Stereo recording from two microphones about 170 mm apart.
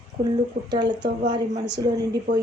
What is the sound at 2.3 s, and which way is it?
Speech, 50° right (ahead or behind).